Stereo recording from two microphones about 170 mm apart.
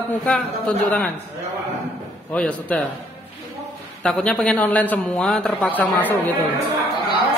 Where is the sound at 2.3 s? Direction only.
10° left (ahead or behind).